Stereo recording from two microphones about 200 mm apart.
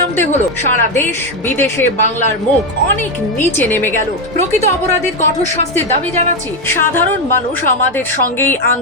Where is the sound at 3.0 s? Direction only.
10° left (ahead or behind).